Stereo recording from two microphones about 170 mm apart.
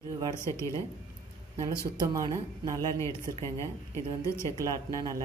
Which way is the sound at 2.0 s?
20° right (ahead or behind).